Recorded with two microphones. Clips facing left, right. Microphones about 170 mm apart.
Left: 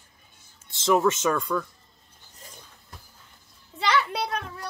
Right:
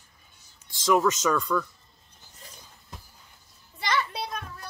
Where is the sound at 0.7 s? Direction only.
25° left (ahead or behind).